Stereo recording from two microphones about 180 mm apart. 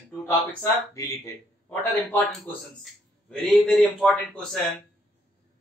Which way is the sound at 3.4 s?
Centre (ahead or behind).